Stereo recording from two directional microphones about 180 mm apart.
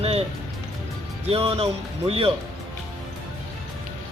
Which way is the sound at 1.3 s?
35° right (ahead or behind).